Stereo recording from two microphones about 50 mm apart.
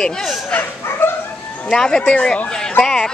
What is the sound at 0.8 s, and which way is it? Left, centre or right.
Dog, left.